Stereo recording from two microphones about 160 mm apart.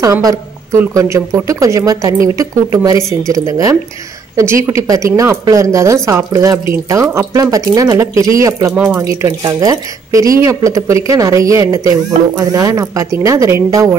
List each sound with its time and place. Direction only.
0.0 s a woman's voice: 20° right (ahead or behind)